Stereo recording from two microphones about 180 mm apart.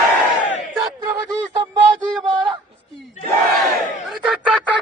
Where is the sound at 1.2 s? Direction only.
25° right (ahead or behind).